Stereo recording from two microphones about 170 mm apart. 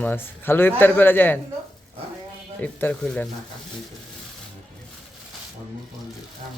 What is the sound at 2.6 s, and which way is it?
Speech, 10° left (ahead or behind).